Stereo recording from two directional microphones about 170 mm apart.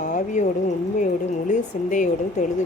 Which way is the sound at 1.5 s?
45° left (ahead or behind).